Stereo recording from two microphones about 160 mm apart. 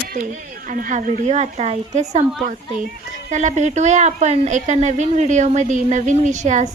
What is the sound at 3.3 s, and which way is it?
Speech, 50° right (ahead or behind).